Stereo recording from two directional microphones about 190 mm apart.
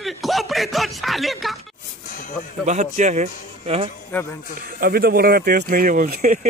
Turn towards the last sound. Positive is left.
turn(degrees=-40)  # may be behind; listen again after turning